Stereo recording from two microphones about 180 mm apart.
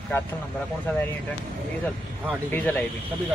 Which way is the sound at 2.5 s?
10° left (ahead or behind).